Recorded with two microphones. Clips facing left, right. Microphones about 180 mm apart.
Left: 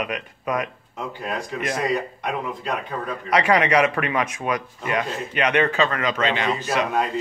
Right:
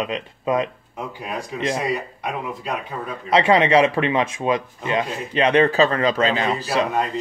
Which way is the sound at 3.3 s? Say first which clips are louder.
Right 3 dB; 25° right (ahead or behind).